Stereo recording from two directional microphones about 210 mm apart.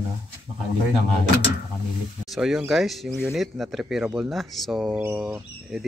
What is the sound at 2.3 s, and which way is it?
Speech, centre (ahead or behind).